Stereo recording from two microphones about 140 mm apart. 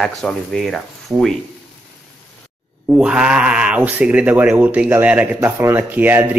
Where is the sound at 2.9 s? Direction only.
5° right (ahead or behind).